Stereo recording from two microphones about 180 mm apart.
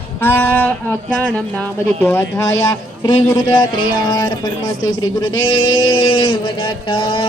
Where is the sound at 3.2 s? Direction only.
25° left (ahead or behind).